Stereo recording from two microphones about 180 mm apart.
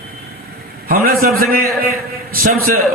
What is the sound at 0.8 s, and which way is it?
A man's voice, 55° right (ahead or behind).